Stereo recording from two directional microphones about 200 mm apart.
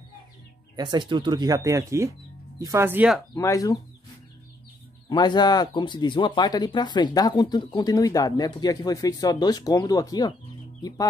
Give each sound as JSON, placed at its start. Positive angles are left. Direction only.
{"t": 0.7, "sound": "speech", "side_deg": -20}
{"t": 3.3, "sound": "speech", "side_deg": 15}
{"t": 5.1, "sound": "speech", "side_deg": 20}